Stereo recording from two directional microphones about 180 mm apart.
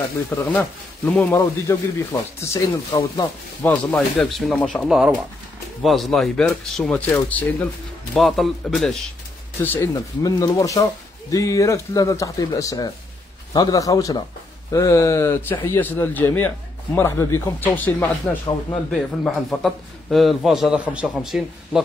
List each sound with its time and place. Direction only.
0.3 s a man's voice: 10° left (ahead or behind)
9.6 s a man's voice: 15° left (ahead or behind)